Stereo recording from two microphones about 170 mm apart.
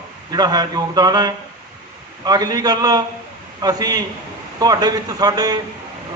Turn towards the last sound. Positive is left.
turn(degrees=-25)  # may be behind; listen again after turning